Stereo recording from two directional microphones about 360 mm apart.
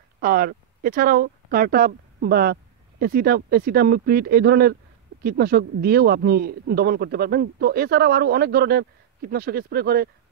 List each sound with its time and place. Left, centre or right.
0.2 s speech: right